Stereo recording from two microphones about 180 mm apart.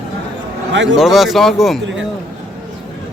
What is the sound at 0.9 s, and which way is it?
Speech, centre (ahead or behind).